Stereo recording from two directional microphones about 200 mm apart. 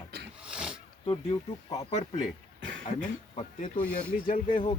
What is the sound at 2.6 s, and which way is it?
Speech, 70° right (ahead or behind).